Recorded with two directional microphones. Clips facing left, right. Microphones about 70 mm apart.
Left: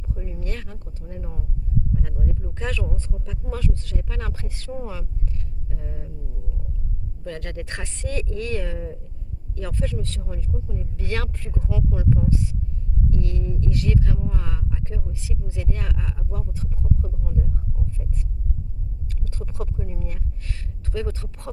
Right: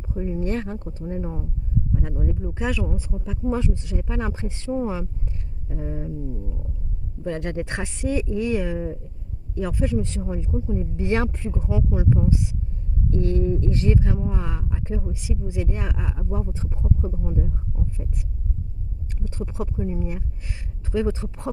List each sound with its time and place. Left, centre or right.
0.1 s speech: right
13.1 s speech: right